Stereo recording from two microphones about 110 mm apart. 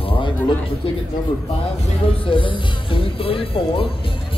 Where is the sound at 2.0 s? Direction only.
55° left (ahead or behind).